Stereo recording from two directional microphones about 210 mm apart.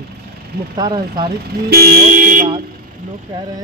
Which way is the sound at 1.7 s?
45° right (ahead or behind).